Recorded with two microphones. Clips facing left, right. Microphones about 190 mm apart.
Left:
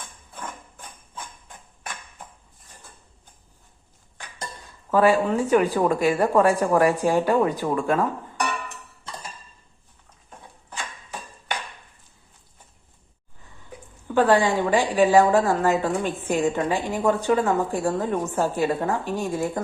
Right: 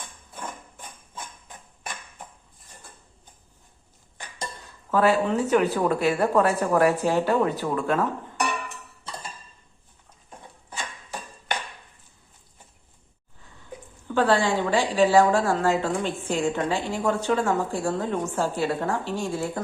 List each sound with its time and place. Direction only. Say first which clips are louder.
4.6 s a woman's voice: left 3 dB; 10° left (ahead or behind)
14.1 s a woman's voice: left 3 dB; 15° left (ahead or behind)